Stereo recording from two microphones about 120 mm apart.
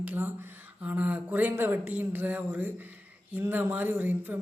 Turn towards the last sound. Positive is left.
turn(degrees=-15)  # may be behind; listen again after turning